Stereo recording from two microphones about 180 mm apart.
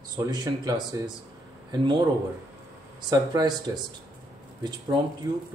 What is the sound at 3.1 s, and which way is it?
Speech, 25° right (ahead or behind).